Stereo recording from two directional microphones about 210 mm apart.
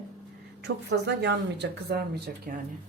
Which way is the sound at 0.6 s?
55° right (ahead or behind).